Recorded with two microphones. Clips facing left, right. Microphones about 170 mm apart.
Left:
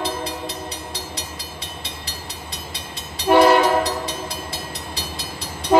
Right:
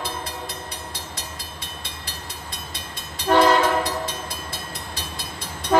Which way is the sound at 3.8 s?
50° right (ahead or behind).